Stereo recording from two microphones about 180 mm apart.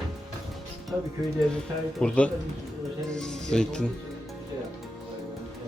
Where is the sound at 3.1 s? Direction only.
5° left (ahead or behind).